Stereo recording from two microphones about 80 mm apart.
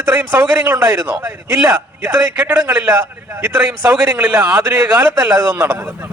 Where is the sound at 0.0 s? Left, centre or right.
Right.